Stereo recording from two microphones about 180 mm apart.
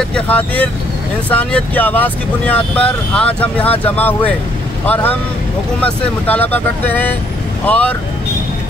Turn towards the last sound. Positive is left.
turn(degrees=10)  # may be behind; listen again after turning